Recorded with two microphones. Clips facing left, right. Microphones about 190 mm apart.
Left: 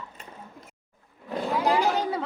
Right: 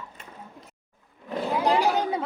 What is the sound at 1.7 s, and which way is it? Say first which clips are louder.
Chatter: right 1 dB; 20° right (ahead or behind).